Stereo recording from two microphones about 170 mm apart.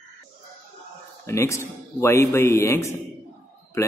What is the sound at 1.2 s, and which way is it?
A man's voice, 15° left (ahead or behind).